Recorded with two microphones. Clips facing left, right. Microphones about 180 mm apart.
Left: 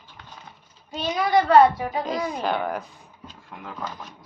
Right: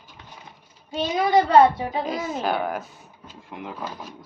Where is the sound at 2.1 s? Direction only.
Centre (ahead or behind).